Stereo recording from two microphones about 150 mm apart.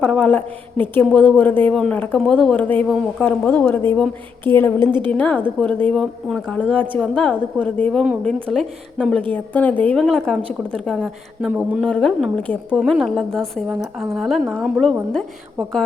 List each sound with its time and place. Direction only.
0.0 s speech: 10° left (ahead or behind)
4.8 s a woman's voice: 30° right (ahead or behind)
5.1 s a woman's voice: 10° left (ahead or behind); by 11.8 s 5° right (ahead or behind)
11.8 s a woman's voice: 5° left (ahead or behind)